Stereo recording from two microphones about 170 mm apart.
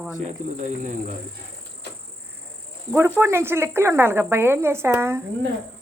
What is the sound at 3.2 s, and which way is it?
Speech, 15° right (ahead or behind).